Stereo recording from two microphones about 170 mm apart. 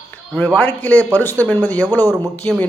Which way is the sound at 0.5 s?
10° left (ahead or behind).